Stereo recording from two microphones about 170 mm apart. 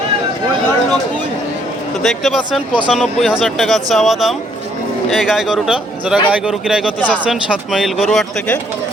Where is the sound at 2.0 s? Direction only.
Centre (ahead or behind).